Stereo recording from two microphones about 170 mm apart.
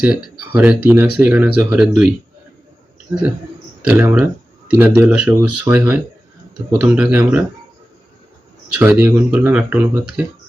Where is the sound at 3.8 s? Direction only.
10° right (ahead or behind).